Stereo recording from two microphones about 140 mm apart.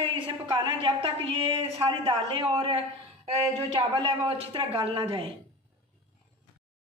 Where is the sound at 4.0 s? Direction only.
40° right (ahead or behind).